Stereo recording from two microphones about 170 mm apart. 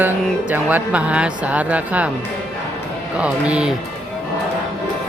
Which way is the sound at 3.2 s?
5° right (ahead or behind).